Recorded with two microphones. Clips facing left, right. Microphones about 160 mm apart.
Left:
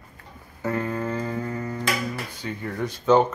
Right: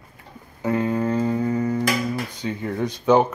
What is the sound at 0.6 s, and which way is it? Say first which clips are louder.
Speech: right 5 dB; 15° right (ahead or behind).